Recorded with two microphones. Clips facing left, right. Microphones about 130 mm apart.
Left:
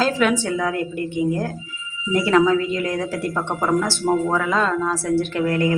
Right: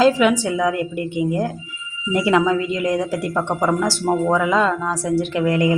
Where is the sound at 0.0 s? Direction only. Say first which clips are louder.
Right 4 dB; 10° right (ahead or behind).